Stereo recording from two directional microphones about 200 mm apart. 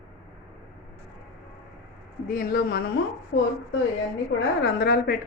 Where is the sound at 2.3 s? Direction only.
50° left (ahead or behind).